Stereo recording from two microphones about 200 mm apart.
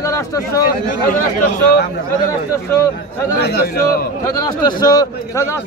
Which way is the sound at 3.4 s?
55° left (ahead or behind).